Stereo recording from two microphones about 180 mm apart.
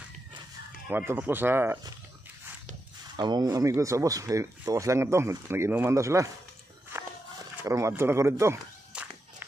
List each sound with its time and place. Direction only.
0.8 s speech: 10° right (ahead or behind)
3.2 s speech: 25° right (ahead or behind)
7.6 s speech: 15° right (ahead or behind)